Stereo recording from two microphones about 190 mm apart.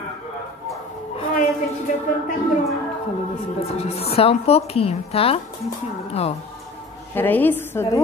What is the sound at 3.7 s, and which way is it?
A woman's voice, 30° left (ahead or behind).